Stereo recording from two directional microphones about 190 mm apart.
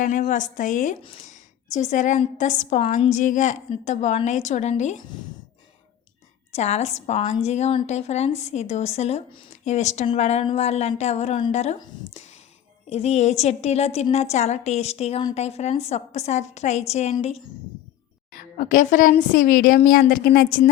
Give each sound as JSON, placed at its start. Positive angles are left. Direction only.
{"t": 0.0, "sound": "a woman's voice", "side_deg": 45}
{"t": 6.5, "sound": "a woman's voice", "side_deg": 35}
{"t": 12.9, "sound": "a woman's voice", "side_deg": 35}
{"t": 18.3, "sound": "a woman's voice", "side_deg": 45}